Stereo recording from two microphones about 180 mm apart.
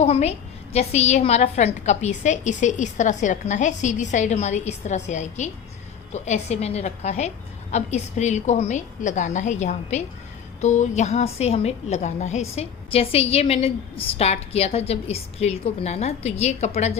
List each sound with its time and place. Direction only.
0.0 s a woman's voice: 35° left (ahead or behind)